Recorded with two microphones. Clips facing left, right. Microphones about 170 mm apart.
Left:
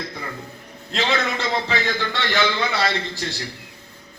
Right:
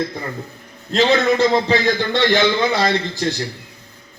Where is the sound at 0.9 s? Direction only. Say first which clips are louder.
Right 8 dB; 40° right (ahead or behind).